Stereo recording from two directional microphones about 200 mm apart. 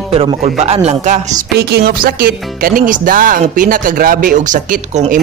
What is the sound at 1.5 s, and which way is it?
Speech, 50° right (ahead or behind).